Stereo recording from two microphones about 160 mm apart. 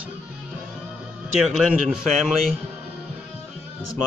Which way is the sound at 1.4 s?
Centre (ahead or behind).